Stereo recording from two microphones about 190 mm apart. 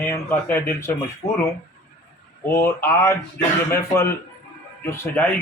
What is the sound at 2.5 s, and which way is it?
Speech, 10° left (ahead or behind).